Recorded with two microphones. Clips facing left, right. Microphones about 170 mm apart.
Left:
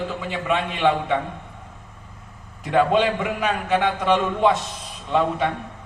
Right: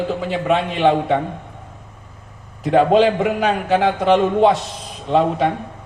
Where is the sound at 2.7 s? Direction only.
35° right (ahead or behind).